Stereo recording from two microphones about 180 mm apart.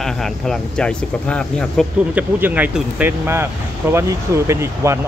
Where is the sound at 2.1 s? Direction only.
10° right (ahead or behind).